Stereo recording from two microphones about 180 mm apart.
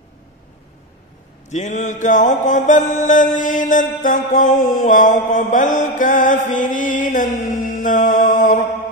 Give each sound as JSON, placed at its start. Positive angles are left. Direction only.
{"t": 1.5, "sound": "mantra", "side_deg": 40}